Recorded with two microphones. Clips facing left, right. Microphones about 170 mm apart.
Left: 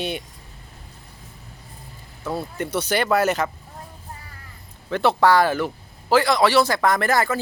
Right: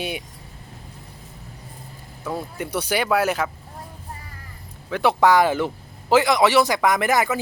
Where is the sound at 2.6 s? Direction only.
10° right (ahead or behind).